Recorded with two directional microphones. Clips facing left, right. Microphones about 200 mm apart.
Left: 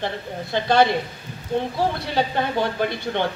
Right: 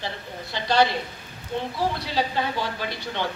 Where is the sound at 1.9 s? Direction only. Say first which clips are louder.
Left 3 dB; 55° left (ahead or behind).